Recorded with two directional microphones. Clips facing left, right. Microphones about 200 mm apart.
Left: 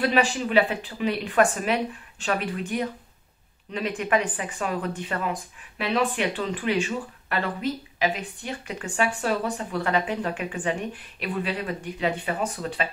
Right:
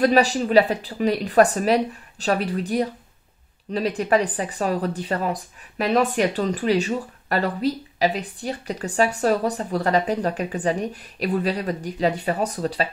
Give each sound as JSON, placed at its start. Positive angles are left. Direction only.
{"t": 0.0, "sound": "speech", "side_deg": -40}